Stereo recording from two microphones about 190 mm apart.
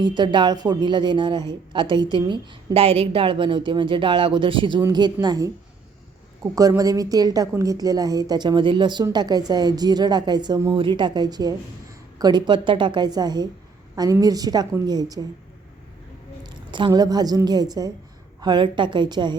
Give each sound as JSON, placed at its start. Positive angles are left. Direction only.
{"t": 0.0, "sound": "a woman's voice", "side_deg": -25}
{"t": 16.4, "sound": "a woman's voice", "side_deg": -25}